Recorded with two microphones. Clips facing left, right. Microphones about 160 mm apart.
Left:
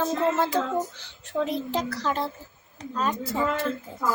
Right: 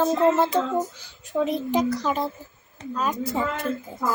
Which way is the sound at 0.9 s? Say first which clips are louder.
Right 3 dB; 10° right (ahead or behind).